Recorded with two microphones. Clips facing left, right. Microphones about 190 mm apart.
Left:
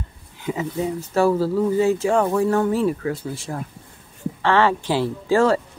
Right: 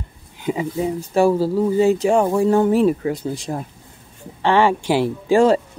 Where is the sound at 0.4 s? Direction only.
20° right (ahead or behind).